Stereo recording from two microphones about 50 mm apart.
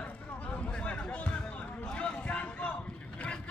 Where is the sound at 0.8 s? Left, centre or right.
Left.